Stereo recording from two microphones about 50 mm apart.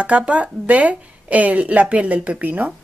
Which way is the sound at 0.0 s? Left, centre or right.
Right.